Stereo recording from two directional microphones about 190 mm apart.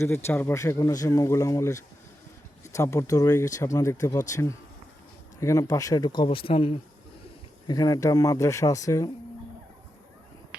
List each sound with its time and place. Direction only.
0.0 s speech: 15° left (ahead or behind)